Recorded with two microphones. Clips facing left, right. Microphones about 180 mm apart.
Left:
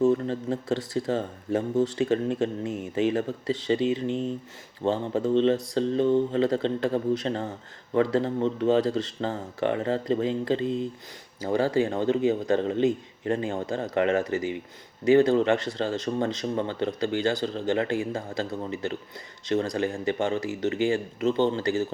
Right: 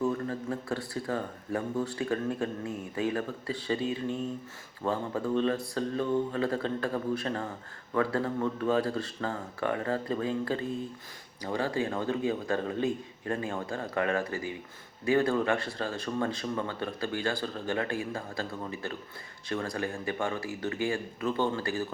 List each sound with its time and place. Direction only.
0.0 s speech: 25° left (ahead or behind)